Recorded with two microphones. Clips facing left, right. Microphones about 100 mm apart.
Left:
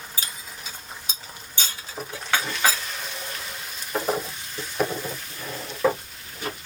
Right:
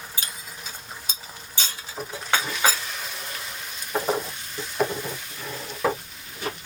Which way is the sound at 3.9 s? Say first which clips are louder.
Right 1 dB; centre (ahead or behind).